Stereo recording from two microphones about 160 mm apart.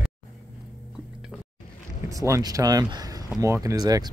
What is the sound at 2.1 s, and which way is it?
Speech, 20° right (ahead or behind).